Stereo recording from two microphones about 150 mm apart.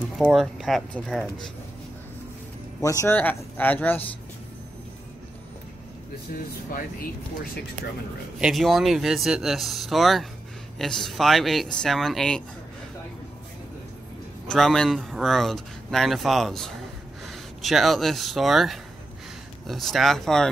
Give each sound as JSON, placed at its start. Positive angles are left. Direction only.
{"t": 0.3, "sound": "speech", "side_deg": 0}
{"t": 2.8, "sound": "speech", "side_deg": 20}
{"t": 8.4, "sound": "speech", "side_deg": 0}
{"t": 14.5, "sound": "speech", "side_deg": 5}